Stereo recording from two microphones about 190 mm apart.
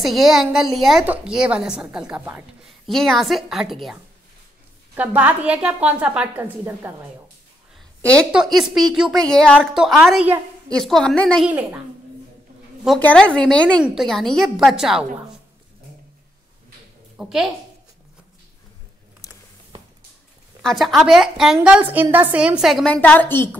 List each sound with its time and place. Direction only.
0.0 s a woman's voice: centre (ahead or behind)
8.5 s a woman's voice: centre (ahead or behind)
11.4 s a woman's voice: 5° right (ahead or behind)
12.8 s a woman's voice: 5° left (ahead or behind)
17.2 s a woman's voice: centre (ahead or behind)
19.2 s a sound: 20° left (ahead or behind)
20.6 s a woman's voice: centre (ahead or behind)